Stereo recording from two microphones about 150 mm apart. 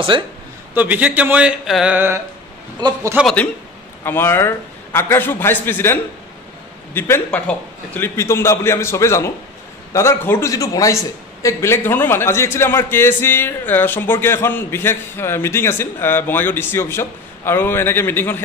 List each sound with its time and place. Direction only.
0.1 s a man's voice: 35° right (ahead or behind)
0.7 s speech: 10° right (ahead or behind)
2.8 s a man's voice: 20° right (ahead or behind)
4.0 s a man's voice: 15° left (ahead or behind)